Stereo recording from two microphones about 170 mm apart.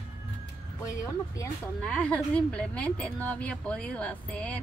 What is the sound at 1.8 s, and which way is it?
A woman's voice, 5° left (ahead or behind).